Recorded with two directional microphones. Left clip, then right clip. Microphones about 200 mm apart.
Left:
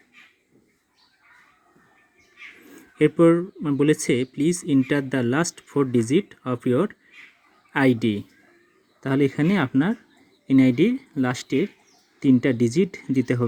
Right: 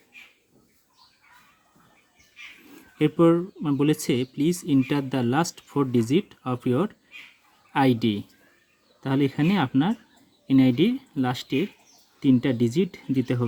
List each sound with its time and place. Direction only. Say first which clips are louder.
3.0 s speech: left 3 dB; 5° left (ahead or behind)